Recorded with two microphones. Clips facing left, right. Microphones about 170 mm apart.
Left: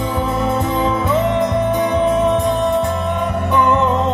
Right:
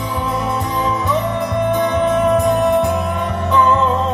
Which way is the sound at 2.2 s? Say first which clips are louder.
Right 1 dB; centre (ahead or behind).